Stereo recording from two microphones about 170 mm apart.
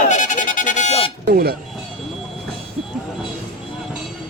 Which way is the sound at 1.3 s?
60° right (ahead or behind).